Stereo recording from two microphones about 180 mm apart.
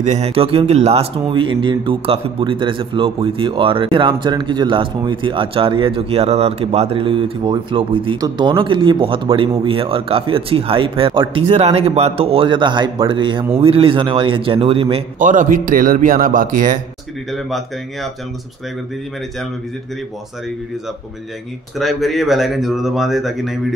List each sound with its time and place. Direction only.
0.0 s speech: 40° right (ahead or behind)
15.1 s a man's voice: 45° right (ahead or behind)
17.3 s speech: centre (ahead or behind)
21.7 s speech: centre (ahead or behind)